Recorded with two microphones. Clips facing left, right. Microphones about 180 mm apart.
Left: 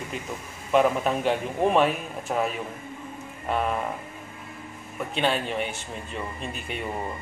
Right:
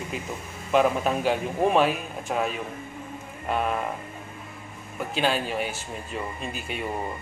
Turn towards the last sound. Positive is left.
turn(degrees=0)  # may be behind; listen again after turning